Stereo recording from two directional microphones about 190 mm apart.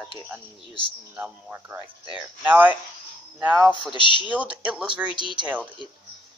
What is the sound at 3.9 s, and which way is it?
Speech, 25° left (ahead or behind).